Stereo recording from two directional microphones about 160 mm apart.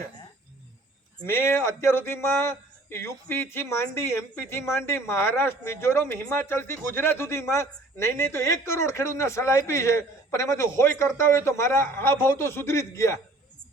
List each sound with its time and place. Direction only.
1.3 s speech: 15° left (ahead or behind)